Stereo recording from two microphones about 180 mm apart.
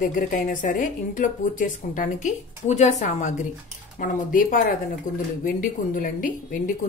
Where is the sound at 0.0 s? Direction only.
50° left (ahead or behind).